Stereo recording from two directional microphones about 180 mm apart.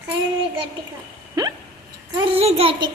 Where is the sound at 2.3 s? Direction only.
35° right (ahead or behind).